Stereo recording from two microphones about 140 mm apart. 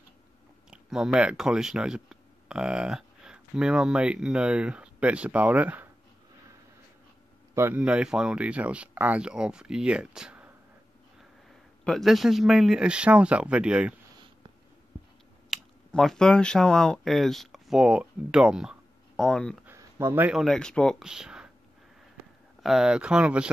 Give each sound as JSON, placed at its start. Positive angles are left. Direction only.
{"t": 0.7, "sound": "speech", "side_deg": -5}
{"t": 7.5, "sound": "speech", "side_deg": -15}
{"t": 11.8, "sound": "speech", "side_deg": 0}
{"t": 15.5, "sound": "speech", "side_deg": 0}
{"t": 19.6, "sound": "a sound", "side_deg": -20}
{"t": 20.3, "sound": "speech", "side_deg": 5}
{"t": 22.6, "sound": "speech", "side_deg": 0}